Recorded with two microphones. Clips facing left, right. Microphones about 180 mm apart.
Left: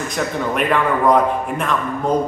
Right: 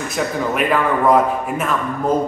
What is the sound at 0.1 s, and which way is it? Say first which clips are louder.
A man's voice: right 2 dB; 5° right (ahead or behind).